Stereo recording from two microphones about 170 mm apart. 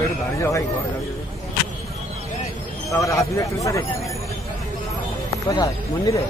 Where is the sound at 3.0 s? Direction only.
20° left (ahead or behind).